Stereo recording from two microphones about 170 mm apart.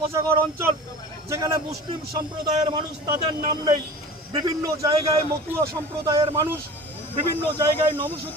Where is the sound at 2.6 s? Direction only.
25° right (ahead or behind).